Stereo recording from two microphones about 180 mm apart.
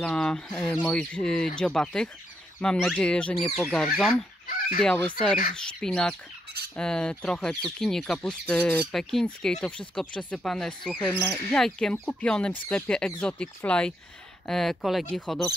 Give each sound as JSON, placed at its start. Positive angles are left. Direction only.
{"t": 0.0, "sound": "speech", "side_deg": 5}
{"t": 4.5, "sound": "fowl", "side_deg": 55}
{"t": 4.8, "sound": "fowl", "side_deg": 10}
{"t": 5.6, "sound": "speech", "side_deg": 5}